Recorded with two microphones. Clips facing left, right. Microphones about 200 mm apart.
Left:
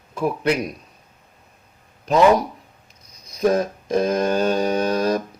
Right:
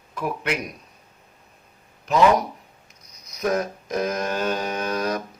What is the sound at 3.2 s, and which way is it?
Mantra, 30° left (ahead or behind).